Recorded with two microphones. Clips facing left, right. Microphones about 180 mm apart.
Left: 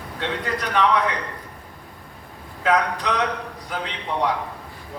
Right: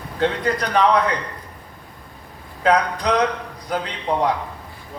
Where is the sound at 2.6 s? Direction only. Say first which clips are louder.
Right 3 dB; 40° right (ahead or behind).